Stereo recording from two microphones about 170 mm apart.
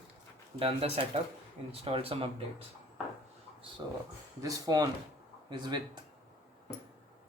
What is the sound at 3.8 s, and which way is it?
Speech, 25° right (ahead or behind).